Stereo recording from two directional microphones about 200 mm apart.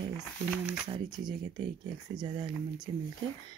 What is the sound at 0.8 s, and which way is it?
Speech, 20° right (ahead or behind).